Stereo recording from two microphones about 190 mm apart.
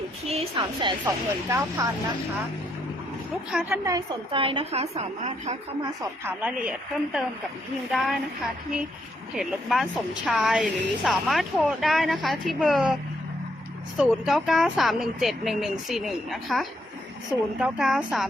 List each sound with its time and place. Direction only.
0.3 s a woman's voice: 30° right (ahead or behind)
1.0 s a woman's voice: 15° right (ahead or behind)
3.8 s a woman's voice: 25° right (ahead or behind)
6.0 s a woman's voice: 10° right (ahead or behind)
9.3 s a woman's voice: centre (ahead or behind)